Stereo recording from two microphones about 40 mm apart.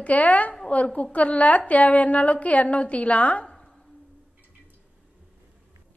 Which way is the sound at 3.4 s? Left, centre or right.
Centre.